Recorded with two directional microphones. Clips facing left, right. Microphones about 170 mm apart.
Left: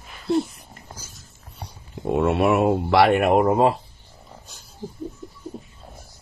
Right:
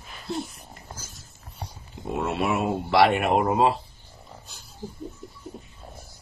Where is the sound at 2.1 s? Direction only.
55° left (ahead or behind).